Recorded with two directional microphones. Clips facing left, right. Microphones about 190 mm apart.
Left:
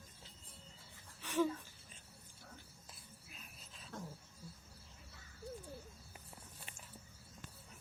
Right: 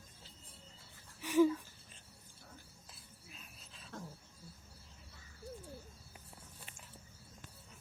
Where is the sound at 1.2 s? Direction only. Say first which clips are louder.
Right 7 dB; 10° right (ahead or behind).